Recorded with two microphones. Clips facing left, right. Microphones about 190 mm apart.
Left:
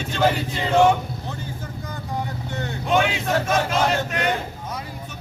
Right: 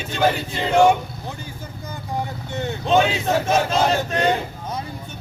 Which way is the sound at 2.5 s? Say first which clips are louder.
Right 3 dB; 20° right (ahead or behind).